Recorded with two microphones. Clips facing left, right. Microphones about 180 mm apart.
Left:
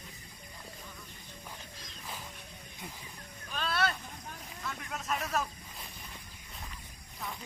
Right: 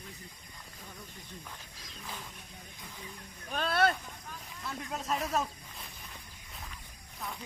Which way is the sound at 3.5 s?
50° right (ahead or behind).